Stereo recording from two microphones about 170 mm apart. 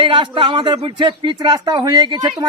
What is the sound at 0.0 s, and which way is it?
A man's voice, 30° right (ahead or behind).